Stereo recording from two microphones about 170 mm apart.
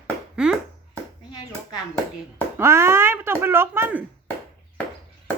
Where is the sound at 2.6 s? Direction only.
15° right (ahead or behind).